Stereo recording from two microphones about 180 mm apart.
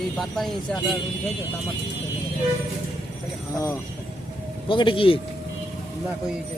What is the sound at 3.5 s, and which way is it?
Speech, 15° left (ahead or behind).